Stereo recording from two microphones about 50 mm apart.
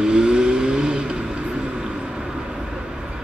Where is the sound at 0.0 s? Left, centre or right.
Centre.